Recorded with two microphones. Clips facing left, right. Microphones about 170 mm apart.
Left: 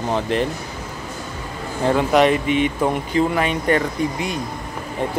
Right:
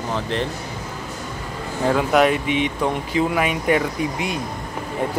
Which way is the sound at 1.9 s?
Centre (ahead or behind).